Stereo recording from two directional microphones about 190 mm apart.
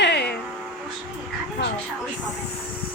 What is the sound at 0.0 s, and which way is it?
Music, 60° left (ahead or behind).